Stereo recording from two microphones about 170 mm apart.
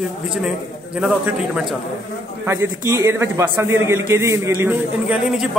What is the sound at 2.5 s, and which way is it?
A man's voice, 15° right (ahead or behind).